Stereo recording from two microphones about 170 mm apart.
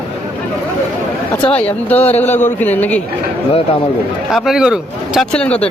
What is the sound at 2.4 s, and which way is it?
Speech, 10° left (ahead or behind).